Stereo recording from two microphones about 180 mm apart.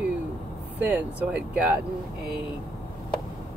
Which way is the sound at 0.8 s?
10° right (ahead or behind).